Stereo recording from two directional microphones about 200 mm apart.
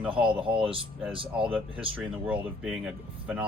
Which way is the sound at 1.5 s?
10° right (ahead or behind).